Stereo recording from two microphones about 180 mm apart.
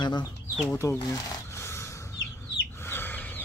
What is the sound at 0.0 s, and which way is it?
Speech, 25° left (ahead or behind).